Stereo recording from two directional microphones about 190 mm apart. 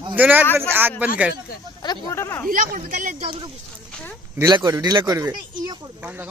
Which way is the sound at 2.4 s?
45° right (ahead or behind).